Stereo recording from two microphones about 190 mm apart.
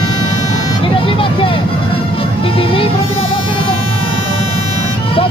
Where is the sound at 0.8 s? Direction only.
30° left (ahead or behind).